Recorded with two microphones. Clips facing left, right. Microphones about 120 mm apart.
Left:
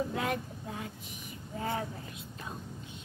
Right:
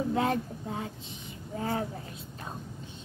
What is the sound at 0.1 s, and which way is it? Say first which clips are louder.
A child's voice: right 5 dB; 30° right (ahead or behind).